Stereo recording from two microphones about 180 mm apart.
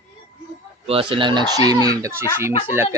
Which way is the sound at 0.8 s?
30° right (ahead or behind).